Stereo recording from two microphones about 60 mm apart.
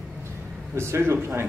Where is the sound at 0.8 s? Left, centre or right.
Right.